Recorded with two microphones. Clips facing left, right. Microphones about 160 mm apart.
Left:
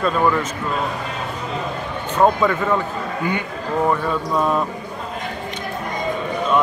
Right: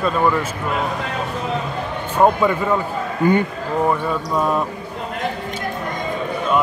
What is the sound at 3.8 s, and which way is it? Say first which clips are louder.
Speech: even; 5° right (ahead or behind).